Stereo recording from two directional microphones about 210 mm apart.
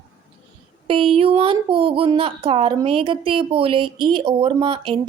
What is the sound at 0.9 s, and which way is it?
A woman's voice, 25° right (ahead or behind).